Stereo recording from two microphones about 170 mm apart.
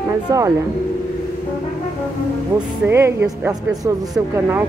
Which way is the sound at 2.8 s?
15° right (ahead or behind).